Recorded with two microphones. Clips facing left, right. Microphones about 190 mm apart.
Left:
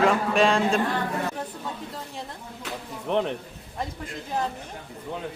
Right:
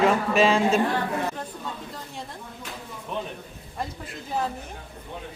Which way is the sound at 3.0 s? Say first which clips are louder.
Left 8 dB; 70° left (ahead or behind).